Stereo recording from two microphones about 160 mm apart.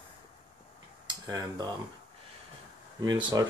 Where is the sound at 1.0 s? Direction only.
25° right (ahead or behind).